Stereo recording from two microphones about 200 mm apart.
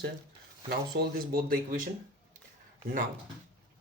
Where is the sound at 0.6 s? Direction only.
50° right (ahead or behind).